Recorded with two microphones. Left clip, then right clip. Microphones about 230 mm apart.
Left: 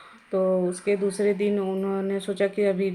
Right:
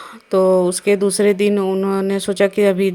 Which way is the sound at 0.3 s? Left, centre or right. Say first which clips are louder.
Right 10 dB; right.